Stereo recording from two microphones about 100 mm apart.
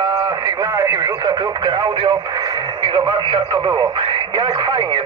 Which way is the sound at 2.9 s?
50° right (ahead or behind).